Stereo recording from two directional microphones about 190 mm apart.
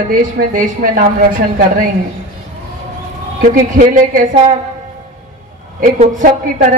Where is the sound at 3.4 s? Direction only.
45° right (ahead or behind).